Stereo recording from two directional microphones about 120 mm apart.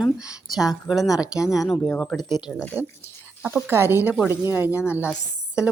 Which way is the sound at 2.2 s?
35° left (ahead or behind).